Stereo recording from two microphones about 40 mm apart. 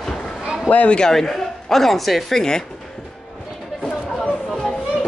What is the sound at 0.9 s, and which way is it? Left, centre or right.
Speech, centre.